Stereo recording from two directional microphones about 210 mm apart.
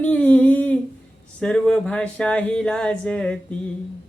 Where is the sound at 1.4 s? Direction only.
5° left (ahead or behind).